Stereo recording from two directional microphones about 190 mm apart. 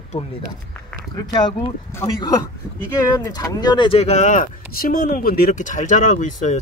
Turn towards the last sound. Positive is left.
turn(degrees=40)  # may be behind; listen again after turning